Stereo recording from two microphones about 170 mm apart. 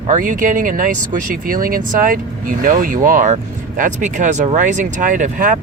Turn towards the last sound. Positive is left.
turn(degrees=-50)  # may be behind; listen again after turning